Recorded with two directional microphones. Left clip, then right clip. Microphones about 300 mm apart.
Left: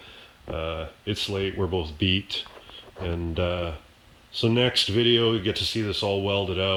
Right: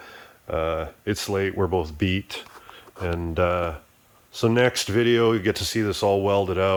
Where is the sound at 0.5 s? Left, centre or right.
Centre.